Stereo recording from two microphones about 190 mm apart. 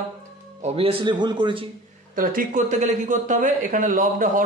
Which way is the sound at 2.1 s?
45° right (ahead or behind).